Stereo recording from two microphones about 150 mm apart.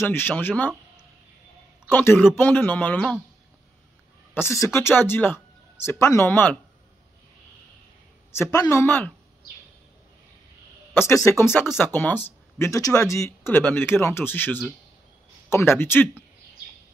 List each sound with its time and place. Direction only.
0.0 s speech: 15° left (ahead or behind)
1.9 s speech: 15° left (ahead or behind)
4.3 s speech: 15° left (ahead or behind)
8.3 s speech: 20° left (ahead or behind)
11.2 s speech: 15° left (ahead or behind)